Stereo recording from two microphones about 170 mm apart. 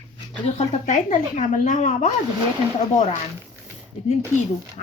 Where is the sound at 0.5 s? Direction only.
45° left (ahead or behind).